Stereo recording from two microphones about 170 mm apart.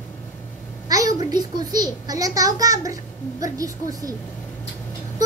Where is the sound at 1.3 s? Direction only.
25° right (ahead or behind).